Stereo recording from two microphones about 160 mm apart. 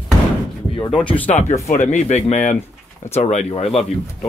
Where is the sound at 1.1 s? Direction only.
10° left (ahead or behind).